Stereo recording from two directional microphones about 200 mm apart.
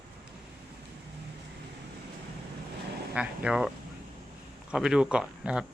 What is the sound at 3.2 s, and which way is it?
Speech, 5° right (ahead or behind).